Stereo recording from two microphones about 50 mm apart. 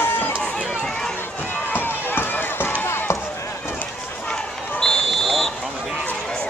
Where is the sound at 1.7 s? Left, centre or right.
Left.